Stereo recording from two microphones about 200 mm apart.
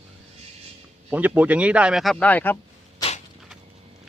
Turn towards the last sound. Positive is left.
turn(degrees=30)  # may be behind; listen again after turning